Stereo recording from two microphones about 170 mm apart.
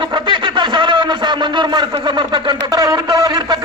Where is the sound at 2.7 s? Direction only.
25° right (ahead or behind).